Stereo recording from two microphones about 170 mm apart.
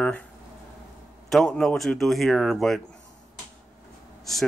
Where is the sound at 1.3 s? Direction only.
5° left (ahead or behind).